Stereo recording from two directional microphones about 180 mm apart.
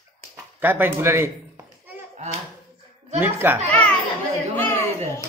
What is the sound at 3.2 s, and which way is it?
Speech, 10° right (ahead or behind).